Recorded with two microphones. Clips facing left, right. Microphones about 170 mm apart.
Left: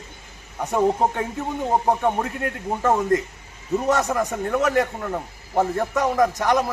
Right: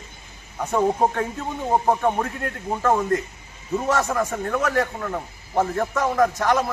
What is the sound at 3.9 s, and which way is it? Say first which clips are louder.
A man's voice: left 1 dB; 15° left (ahead or behind).